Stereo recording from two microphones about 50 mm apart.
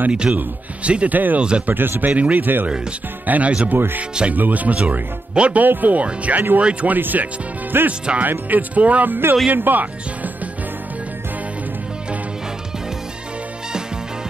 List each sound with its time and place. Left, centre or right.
0.1 s speech: centre
3.7 s speech: right
7.0 s speech: right
8.2 s speech: right